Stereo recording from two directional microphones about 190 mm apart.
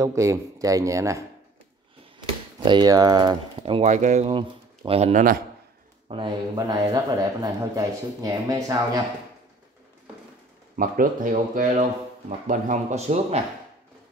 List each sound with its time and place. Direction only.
0.0 s speech: 15° right (ahead or behind); by 5.4 s 45° right (ahead or behind)
6.0 s speech: 25° right (ahead or behind)
10.8 s speech: 45° right (ahead or behind)